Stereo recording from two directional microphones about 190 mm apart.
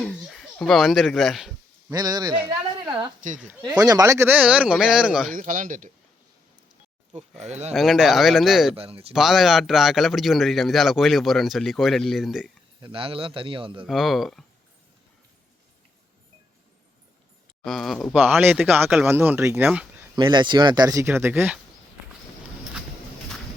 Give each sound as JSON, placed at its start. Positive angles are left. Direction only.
{"t": 0.0, "sound": "a child's voice", "side_deg": 0}
{"t": 1.9, "sound": "a man's voice", "side_deg": -20}
{"t": 3.8, "sound": "speech", "side_deg": -20}
{"t": 5.3, "sound": "speech", "side_deg": -45}
{"t": 7.2, "sound": "speech", "side_deg": -35}
{"t": 7.7, "sound": "speech", "side_deg": 0}
{"t": 8.7, "sound": "speech", "side_deg": -30}
{"t": 9.1, "sound": "speech", "side_deg": 0}
{"t": 12.8, "sound": "a man's voice", "side_deg": -30}
{"t": 13.8, "sound": "speech", "side_deg": 0}
{"t": 17.6, "sound": "speech", "side_deg": 0}
{"t": 20.1, "sound": "speech", "side_deg": -25}